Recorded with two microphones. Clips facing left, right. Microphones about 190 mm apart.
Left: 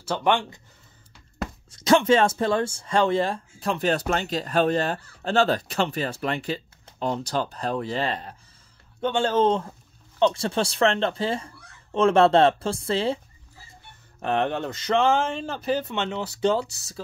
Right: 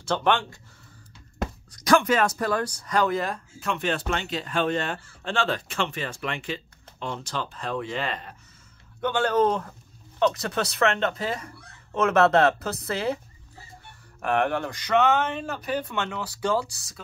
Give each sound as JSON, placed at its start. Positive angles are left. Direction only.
{"t": 0.0, "sound": "speech", "side_deg": 10}
{"t": 1.7, "sound": "speech", "side_deg": 25}
{"t": 14.2, "sound": "speech", "side_deg": 20}